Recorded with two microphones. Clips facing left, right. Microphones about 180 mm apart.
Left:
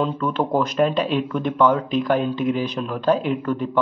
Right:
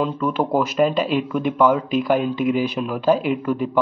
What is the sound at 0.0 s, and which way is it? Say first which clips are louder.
Speech: right 1 dB; 5° right (ahead or behind).